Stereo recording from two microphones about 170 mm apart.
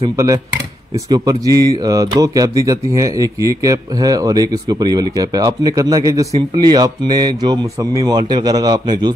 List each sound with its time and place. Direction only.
1.1 s speech: 20° right (ahead or behind)